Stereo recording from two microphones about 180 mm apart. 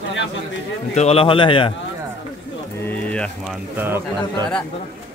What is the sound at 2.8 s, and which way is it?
Speech, 5° left (ahead or behind).